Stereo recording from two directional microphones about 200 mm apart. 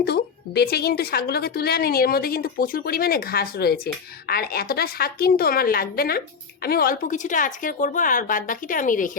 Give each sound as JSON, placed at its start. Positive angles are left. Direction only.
{"t": 0.0, "sound": "a woman's voice", "side_deg": 55}